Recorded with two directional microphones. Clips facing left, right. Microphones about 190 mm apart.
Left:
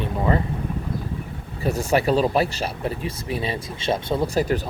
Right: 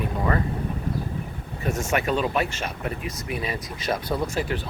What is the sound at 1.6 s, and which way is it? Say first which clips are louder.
Speech: left 4 dB; 35° left (ahead or behind).